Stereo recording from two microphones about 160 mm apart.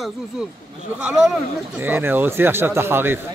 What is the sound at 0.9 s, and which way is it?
A man's voice, 5° right (ahead or behind).